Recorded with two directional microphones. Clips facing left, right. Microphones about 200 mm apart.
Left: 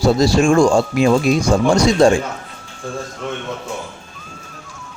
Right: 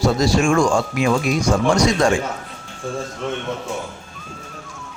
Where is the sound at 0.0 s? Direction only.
30° left (ahead or behind).